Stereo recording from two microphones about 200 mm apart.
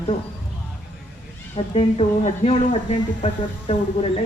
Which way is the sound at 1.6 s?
25° left (ahead or behind).